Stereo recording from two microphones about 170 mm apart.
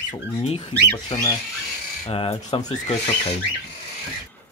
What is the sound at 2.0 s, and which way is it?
Speech, 30° left (ahead or behind).